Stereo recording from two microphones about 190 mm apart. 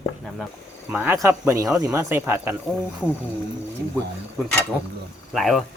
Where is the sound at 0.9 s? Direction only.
10° right (ahead or behind).